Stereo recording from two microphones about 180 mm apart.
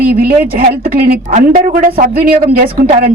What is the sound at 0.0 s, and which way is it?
A woman's voice, 55° right (ahead or behind).